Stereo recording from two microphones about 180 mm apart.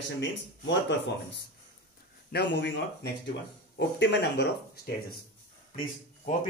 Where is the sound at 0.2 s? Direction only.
80° left.